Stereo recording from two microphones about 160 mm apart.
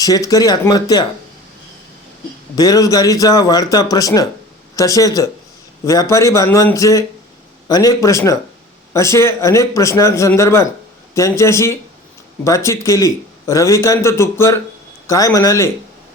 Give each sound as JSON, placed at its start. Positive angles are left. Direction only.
{"t": 0.0, "sound": "a man's voice", "side_deg": 20}
{"t": 2.6, "sound": "a man's voice", "side_deg": 25}